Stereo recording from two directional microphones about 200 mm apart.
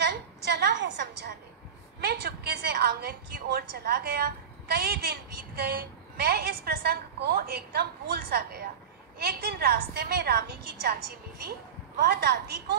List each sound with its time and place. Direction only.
0.0 s a sound: 55° right (ahead or behind)
2.0 s a woman's voice: 55° right (ahead or behind)
12.0 s a woman's voice: 50° right (ahead or behind)